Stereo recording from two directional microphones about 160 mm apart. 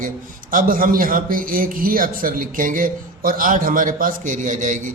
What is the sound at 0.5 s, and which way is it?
A man's voice, 60° right (ahead or behind).